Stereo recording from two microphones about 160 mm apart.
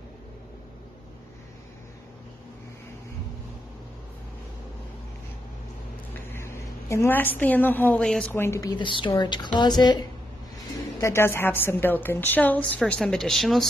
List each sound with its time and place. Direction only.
6.3 s a woman's voice: 15° left (ahead or behind)